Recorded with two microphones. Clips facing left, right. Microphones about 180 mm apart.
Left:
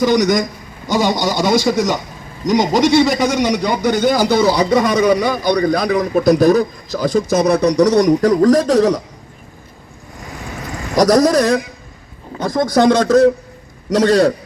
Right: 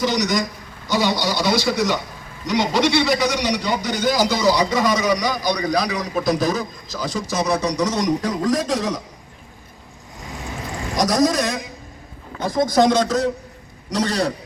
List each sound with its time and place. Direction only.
0.0 s a man's voice: 50° left (ahead or behind); by 9.0 s 65° left (ahead or behind)
10.9 s speech: 65° left (ahead or behind)